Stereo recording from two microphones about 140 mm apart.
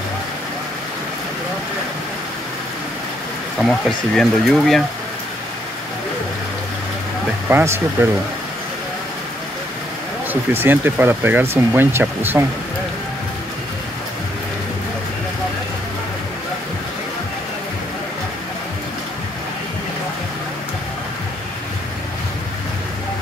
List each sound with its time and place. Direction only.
3.5 s speech: centre (ahead or behind)
7.4 s speech: 15° right (ahead or behind)
10.3 s speech: 15° right (ahead or behind)